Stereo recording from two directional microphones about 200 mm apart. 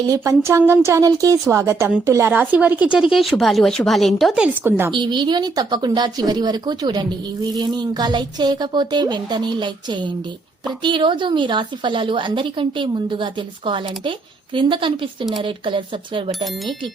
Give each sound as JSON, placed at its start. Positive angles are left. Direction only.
{"t": 0.1, "sound": "speech", "side_deg": -15}
{"t": 4.9, "sound": "speech", "side_deg": -25}